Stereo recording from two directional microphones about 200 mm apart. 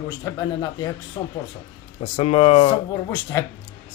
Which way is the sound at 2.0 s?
30° left (ahead or behind).